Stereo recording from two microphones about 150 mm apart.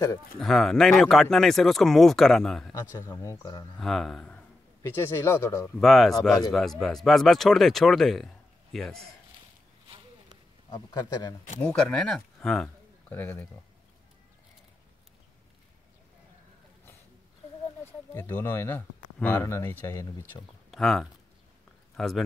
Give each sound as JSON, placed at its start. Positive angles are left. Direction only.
{"t": 0.4, "sound": "speech", "side_deg": 0}
{"t": 2.9, "sound": "speech", "side_deg": 20}
{"t": 3.7, "sound": "speech", "side_deg": 0}
{"t": 4.8, "sound": "speech", "side_deg": 15}
{"t": 5.8, "sound": "speech", "side_deg": 0}
{"t": 10.7, "sound": "speech", "side_deg": 25}
{"t": 11.6, "sound": "speech", "side_deg": 5}
{"t": 18.1, "sound": "speech", "side_deg": 15}
{"t": 20.7, "sound": "speech", "side_deg": 0}